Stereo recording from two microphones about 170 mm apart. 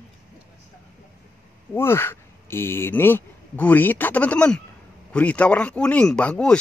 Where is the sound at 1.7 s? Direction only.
15° left (ahead or behind).